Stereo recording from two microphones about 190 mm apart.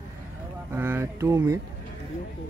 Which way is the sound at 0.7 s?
10° right (ahead or behind).